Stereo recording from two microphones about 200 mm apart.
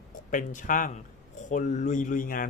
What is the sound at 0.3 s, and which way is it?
Speech, 40° left (ahead or behind).